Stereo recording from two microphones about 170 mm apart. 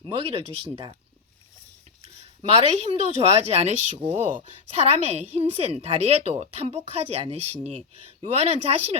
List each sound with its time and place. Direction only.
0.1 s a woman's voice: 35° right (ahead or behind)
2.0 s a woman's voice: 35° right (ahead or behind)